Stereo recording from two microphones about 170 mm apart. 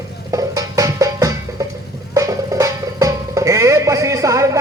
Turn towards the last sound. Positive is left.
turn(degrees=-20)  # may be behind; listen again after turning